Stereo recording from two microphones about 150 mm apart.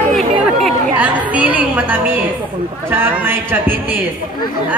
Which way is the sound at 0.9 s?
10° right (ahead or behind).